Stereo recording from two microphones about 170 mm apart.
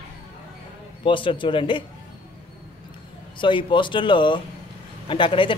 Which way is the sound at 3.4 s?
30° left (ahead or behind).